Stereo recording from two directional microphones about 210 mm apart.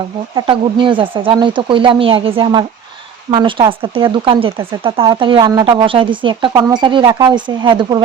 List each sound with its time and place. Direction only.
0.3 s speech: 20° right (ahead or behind)